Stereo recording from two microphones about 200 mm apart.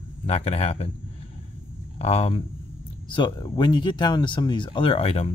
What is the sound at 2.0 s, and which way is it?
Speech, 30° left (ahead or behind).